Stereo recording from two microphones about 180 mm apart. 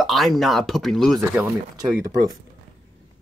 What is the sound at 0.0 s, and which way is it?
Speech, centre (ahead or behind).